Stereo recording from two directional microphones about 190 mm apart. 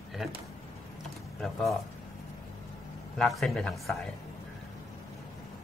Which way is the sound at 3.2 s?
Centre (ahead or behind).